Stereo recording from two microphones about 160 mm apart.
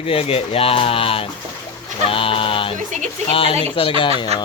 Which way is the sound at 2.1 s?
35° left (ahead or behind).